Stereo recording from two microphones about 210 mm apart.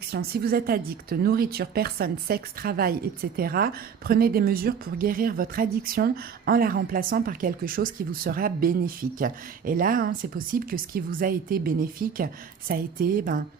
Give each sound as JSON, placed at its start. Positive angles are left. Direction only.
{"t": 0.1, "sound": "a woman's voice", "side_deg": -45}